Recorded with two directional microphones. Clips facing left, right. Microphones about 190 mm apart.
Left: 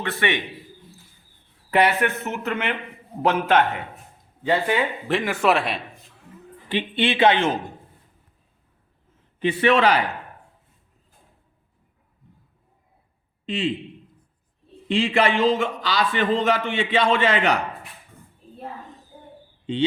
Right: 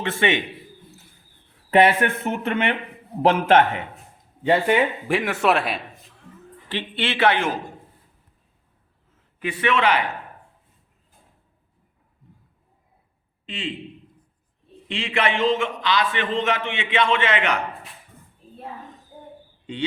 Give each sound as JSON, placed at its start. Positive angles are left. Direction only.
{"t": 0.0, "sound": "speech", "side_deg": -25}
{"t": 1.7, "sound": "speech", "side_deg": -25}
{"t": 5.0, "sound": "a man's voice", "side_deg": -5}
{"t": 6.4, "sound": "a man's voice", "side_deg": 15}
{"t": 9.4, "sound": "a man's voice", "side_deg": 30}
{"t": 13.4, "sound": "a sound", "side_deg": 35}
{"t": 14.8, "sound": "a man's voice", "side_deg": 35}